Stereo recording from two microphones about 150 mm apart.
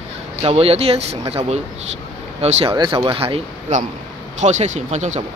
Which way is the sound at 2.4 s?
35° right (ahead or behind).